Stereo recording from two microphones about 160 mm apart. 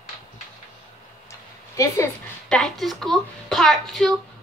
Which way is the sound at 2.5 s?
Centre (ahead or behind).